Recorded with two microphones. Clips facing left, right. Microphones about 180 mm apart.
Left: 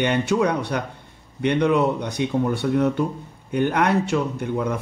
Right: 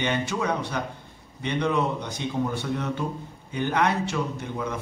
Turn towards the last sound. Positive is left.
turn(degrees=60)  # may be behind; listen again after turning